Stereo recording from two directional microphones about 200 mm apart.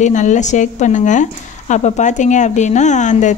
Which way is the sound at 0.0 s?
35° left (ahead or behind).